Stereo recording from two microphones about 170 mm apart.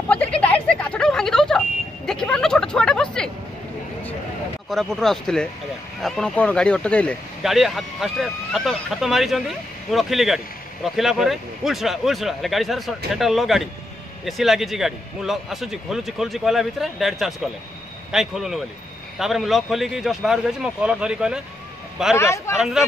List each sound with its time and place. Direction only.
0.1 s a sound: 10° left (ahead or behind)
4.6 s speech: centre (ahead or behind)
22.1 s a man's voice: 15° left (ahead or behind)
22.6 s speech: centre (ahead or behind)